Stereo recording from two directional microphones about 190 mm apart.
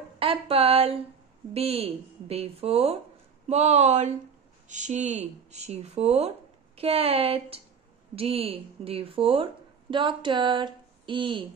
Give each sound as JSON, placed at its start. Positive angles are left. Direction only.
{"t": 0.2, "sound": "a woman's voice", "side_deg": -30}